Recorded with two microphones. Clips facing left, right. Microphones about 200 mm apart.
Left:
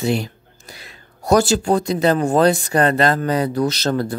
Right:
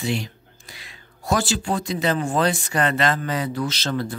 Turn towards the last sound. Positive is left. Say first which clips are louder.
# left 6 dB
turn(degrees=45)  # may be behind; listen again after turning